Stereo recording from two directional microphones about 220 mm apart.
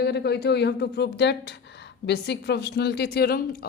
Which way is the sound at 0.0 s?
50° left (ahead or behind).